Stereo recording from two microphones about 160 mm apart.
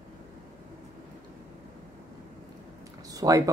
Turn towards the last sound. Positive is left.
turn(degrees=-20)  # may be behind; listen again after turning